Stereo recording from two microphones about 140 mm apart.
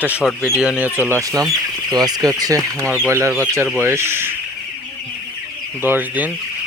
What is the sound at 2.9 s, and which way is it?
Speech, 15° right (ahead or behind).